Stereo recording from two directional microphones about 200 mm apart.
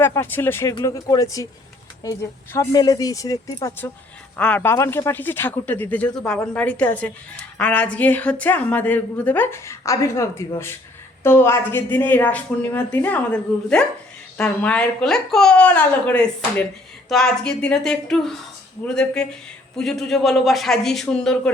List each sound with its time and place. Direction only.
0.0 s a woman's voice: 10° left (ahead or behind)